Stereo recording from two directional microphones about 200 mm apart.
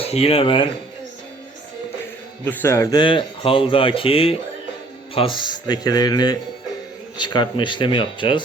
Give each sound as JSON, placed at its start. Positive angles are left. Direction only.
{"t": 0.0, "sound": "speech", "side_deg": 30}
{"t": 2.4, "sound": "speech", "side_deg": 10}